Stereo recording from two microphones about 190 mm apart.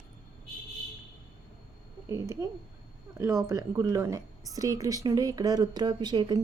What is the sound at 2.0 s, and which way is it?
A woman's voice, 15° right (ahead or behind).